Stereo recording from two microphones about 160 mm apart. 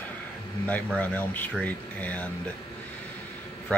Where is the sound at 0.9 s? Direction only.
10° left (ahead or behind).